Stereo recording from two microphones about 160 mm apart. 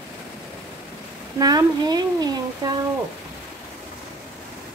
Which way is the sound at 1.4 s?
25° right (ahead or behind).